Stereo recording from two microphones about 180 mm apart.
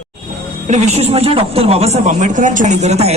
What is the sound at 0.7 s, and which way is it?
A man's voice, 35° right (ahead or behind).